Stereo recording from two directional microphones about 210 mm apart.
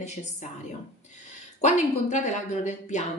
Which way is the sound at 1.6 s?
35° left (ahead or behind).